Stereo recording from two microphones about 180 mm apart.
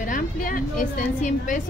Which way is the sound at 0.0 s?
50° left (ahead or behind).